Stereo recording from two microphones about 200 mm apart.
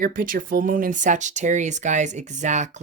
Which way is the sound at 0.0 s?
45° right (ahead or behind).